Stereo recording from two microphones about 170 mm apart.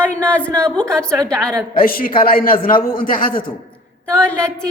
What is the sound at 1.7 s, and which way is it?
A woman's voice, 55° left (ahead or behind).